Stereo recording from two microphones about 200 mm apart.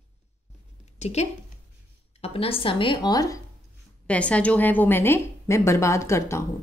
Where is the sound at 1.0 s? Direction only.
35° left (ahead or behind); by 3.4 s 20° left (ahead or behind).